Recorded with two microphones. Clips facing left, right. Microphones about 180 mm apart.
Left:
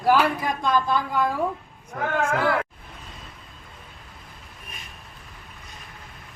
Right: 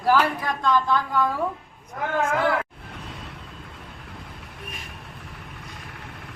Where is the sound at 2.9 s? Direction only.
75° right (ahead or behind).